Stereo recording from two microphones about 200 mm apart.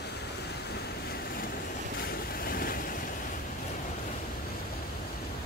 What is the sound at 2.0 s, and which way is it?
Waves, 45° left (ahead or behind).